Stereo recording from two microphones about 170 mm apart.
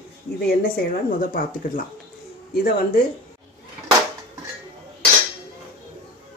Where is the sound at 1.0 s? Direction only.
55° left (ahead or behind).